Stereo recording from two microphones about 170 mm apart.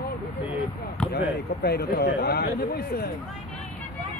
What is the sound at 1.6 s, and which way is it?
Speech, 70° left (ahead or behind).